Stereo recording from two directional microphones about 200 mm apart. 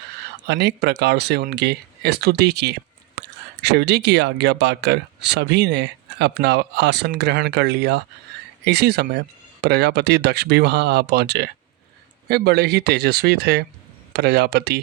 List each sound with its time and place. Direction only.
0.4 s speech: 55° right (ahead or behind)